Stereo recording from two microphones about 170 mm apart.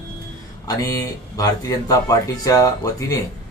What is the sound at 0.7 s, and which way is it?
Speech, 20° left (ahead or behind).